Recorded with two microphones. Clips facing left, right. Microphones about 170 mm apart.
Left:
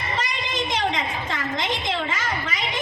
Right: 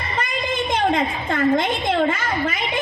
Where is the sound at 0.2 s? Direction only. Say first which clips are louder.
Right 6 dB; 55° right (ahead or behind).